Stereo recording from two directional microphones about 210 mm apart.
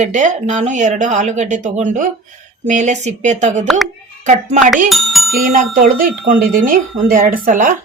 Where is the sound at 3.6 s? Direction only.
Centre (ahead or behind).